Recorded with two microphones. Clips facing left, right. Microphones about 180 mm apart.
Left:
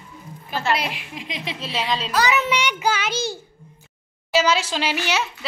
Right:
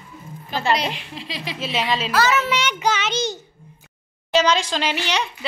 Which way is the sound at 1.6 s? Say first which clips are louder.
Right 3 dB; centre (ahead or behind).